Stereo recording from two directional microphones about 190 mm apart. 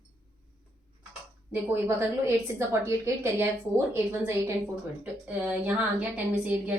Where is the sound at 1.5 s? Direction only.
10° right (ahead or behind).